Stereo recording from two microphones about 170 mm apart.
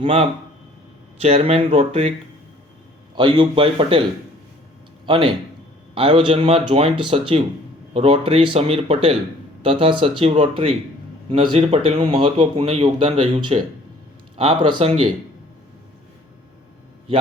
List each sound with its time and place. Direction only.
0.0 s speech: 35° right (ahead or behind)
3.2 s speech: 25° right (ahead or behind)
5.0 s a man's voice: 30° right (ahead or behind)